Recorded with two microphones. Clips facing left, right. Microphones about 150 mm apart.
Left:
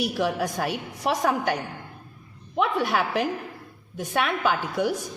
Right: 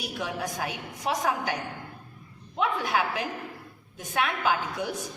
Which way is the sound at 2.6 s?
55° left (ahead or behind).